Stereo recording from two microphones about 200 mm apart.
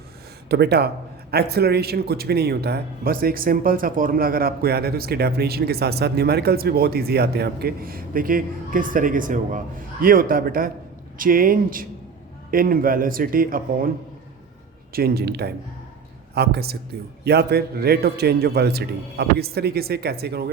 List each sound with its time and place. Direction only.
0.4 s speech: 55° right (ahead or behind)
14.9 s speech: 50° right (ahead or behind)